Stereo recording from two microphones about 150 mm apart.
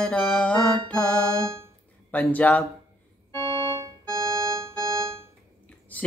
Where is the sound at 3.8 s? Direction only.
20° right (ahead or behind).